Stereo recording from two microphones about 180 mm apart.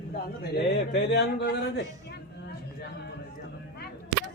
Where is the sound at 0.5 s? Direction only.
65° left (ahead or behind).